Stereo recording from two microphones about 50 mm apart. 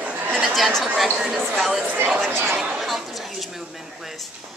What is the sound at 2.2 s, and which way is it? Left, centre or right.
Speech, right.